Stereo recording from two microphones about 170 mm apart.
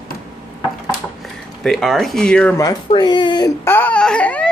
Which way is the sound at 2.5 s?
20° left (ahead or behind).